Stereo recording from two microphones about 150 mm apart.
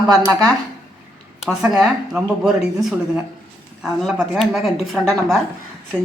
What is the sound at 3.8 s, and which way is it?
Speech, centre (ahead or behind).